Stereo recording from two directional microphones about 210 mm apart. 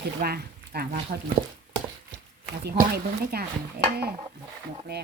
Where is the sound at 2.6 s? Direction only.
50° right (ahead or behind).